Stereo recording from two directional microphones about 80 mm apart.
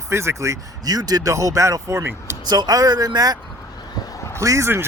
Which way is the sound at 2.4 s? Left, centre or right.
Right.